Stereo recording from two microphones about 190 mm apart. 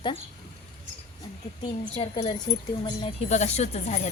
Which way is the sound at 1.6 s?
20° left (ahead or behind).